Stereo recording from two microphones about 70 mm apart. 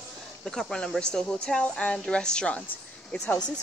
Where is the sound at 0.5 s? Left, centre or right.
Centre.